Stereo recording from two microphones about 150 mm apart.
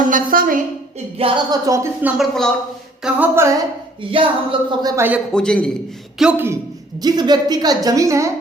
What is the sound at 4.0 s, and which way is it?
Speech, 35° right (ahead or behind).